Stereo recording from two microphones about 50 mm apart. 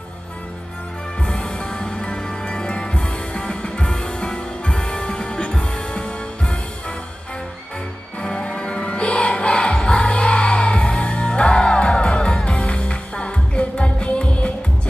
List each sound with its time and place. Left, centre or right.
1.3 s music: centre
8.2 s music: centre